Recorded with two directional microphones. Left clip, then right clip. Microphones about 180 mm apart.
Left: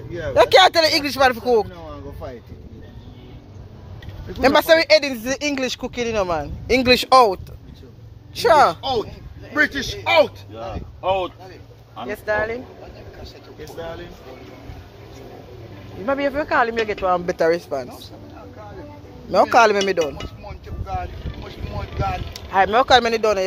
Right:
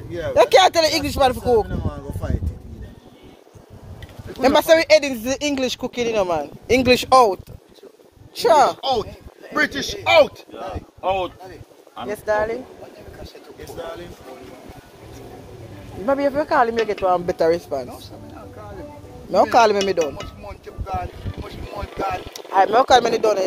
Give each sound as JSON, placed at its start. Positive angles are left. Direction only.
{"t": 0.3, "sound": "speech", "side_deg": -10}
{"t": 4.4, "sound": "speech", "side_deg": -10}
{"t": 8.4, "sound": "speech", "side_deg": -10}
{"t": 8.8, "sound": "speech", "side_deg": -45}
{"t": 11.0, "sound": "speech", "side_deg": 0}
{"t": 16.1, "sound": "speech", "side_deg": -10}
{"t": 19.5, "sound": "speech", "side_deg": -5}
{"t": 20.4, "sound": "vehicle", "side_deg": -45}
{"t": 22.3, "sound": "speech", "side_deg": -20}